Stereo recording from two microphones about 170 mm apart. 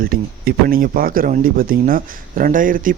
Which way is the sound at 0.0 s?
60° right (ahead or behind).